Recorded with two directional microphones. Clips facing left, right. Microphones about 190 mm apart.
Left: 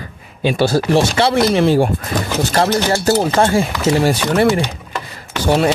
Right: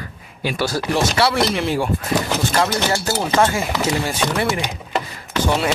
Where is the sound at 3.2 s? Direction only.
35° left (ahead or behind).